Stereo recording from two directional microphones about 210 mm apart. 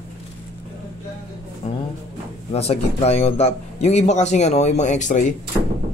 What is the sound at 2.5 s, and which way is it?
Speech, 30° left (ahead or behind).